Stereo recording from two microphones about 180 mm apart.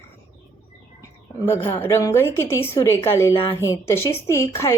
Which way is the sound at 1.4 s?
15° left (ahead or behind).